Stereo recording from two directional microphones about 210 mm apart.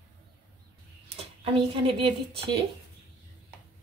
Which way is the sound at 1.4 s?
25° right (ahead or behind).